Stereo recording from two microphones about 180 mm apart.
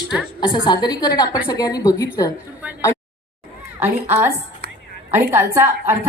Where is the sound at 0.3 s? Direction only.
25° left (ahead or behind).